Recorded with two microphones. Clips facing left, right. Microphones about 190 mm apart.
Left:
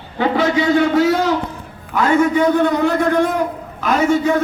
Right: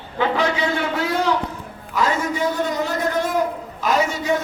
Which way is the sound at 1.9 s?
60° left (ahead or behind).